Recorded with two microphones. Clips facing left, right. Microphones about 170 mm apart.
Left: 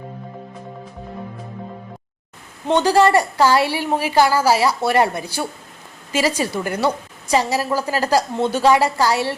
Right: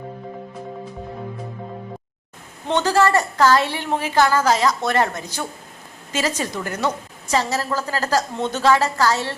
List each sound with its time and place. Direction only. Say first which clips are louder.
2.6 s a woman's voice: left 3 dB; 10° left (ahead or behind)